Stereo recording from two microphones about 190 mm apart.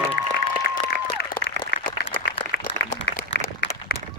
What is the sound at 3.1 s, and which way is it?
Applause, 60° left (ahead or behind).